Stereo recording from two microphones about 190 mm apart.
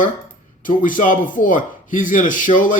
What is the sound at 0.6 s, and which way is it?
Speech, 45° left (ahead or behind).